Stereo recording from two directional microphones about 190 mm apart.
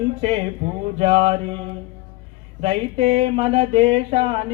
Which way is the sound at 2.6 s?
30° right (ahead or behind).